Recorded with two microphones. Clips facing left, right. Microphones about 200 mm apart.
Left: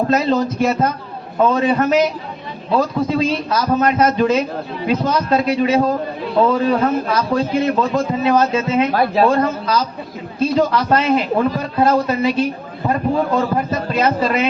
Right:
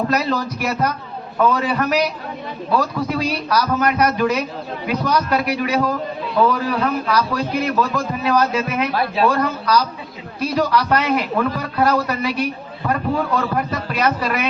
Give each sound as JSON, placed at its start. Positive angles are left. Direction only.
{"t": 0.1, "sound": "a man's voice", "side_deg": 25}
{"t": 8.9, "sound": "a man's voice", "side_deg": 45}
{"t": 9.3, "sound": "a man's voice", "side_deg": 25}